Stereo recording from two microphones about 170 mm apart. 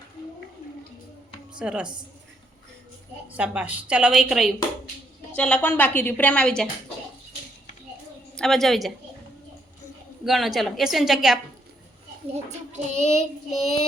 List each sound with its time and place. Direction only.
1.5 s a woman's voice: 5° right (ahead or behind)
3.3 s a woman's voice: 10° right (ahead or behind)
5.4 s a woman's voice: 10° left (ahead or behind)
8.4 s a woman's voice: centre (ahead or behind)
10.2 s a woman's voice: centre (ahead or behind)
12.3 s a child's voice: 40° right (ahead or behind)
13.0 s child singing: 40° left (ahead or behind)